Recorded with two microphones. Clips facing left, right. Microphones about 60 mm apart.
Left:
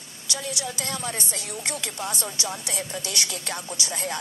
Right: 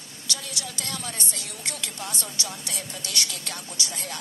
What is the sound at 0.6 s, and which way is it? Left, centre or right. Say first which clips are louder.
Speech: left 4 dB; left.